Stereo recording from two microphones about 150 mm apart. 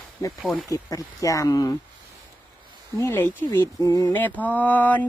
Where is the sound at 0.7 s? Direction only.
20° left (ahead or behind).